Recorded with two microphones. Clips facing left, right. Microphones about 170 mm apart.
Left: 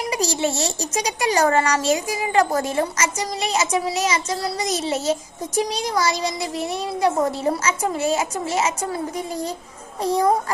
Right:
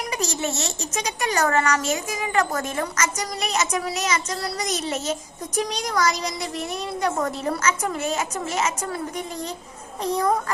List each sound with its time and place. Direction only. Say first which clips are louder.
0.1 s a child's voice: left 5 dB; 30° left (ahead or behind)